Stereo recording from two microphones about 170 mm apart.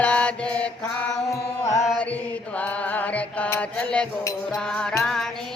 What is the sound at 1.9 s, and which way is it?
Chant, 10° left (ahead or behind).